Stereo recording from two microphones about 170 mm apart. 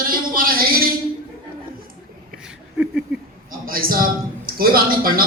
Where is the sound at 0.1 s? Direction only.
55° right (ahead or behind).